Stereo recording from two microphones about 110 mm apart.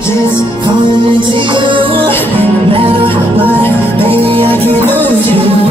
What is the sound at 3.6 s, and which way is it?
Music, 20° left (ahead or behind).